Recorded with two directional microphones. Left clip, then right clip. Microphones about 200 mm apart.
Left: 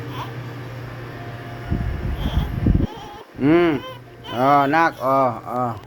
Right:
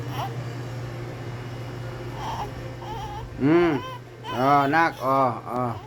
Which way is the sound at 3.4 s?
15° left (ahead or behind).